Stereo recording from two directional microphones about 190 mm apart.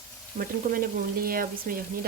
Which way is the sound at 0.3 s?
50° right (ahead or behind).